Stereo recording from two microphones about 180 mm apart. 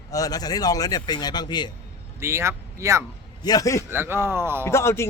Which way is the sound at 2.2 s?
15° right (ahead or behind).